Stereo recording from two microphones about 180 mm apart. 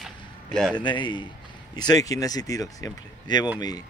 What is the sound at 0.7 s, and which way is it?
Speech, 25° left (ahead or behind).